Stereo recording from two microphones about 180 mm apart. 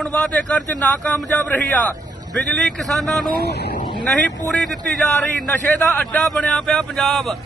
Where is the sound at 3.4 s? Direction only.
65° left (ahead or behind).